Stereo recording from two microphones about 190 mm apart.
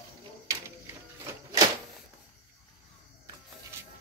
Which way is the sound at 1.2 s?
20° right (ahead or behind).